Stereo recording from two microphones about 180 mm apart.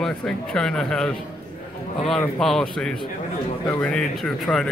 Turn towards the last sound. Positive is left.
turn(degrees=5)  # may be behind; listen again after turning